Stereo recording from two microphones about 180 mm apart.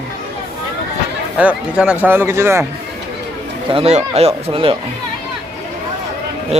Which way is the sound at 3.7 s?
35° right (ahead or behind).